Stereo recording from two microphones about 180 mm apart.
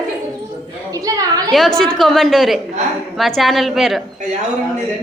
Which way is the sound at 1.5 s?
Centre (ahead or behind).